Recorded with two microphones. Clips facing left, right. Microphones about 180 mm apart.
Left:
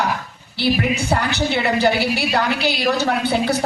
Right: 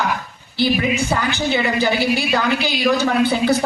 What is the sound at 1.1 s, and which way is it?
A woman's voice, 65° left (ahead or behind).